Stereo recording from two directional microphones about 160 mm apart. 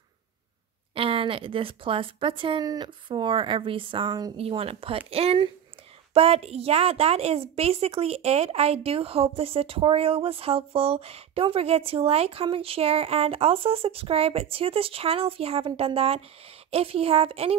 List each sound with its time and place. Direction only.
0.9 s a woman's voice: 35° right (ahead or behind)